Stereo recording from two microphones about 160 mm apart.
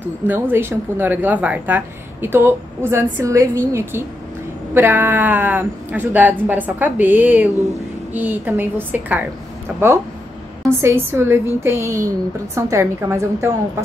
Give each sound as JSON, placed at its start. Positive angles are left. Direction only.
{"t": 0.3, "sound": "a woman's voice", "side_deg": -15}
{"t": 10.8, "sound": "a woman's voice", "side_deg": -15}